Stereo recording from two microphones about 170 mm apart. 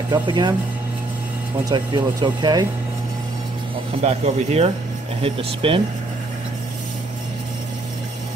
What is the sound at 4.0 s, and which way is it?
Speech, 40° right (ahead or behind).